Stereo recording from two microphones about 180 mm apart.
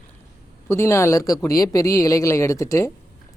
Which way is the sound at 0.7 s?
15° left (ahead or behind).